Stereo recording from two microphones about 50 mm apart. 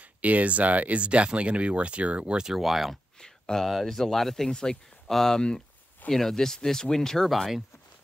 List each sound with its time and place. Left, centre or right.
0.0 s speech: right; by 3.0 s centre
3.2 s a sound: centre
3.6 s speech: centre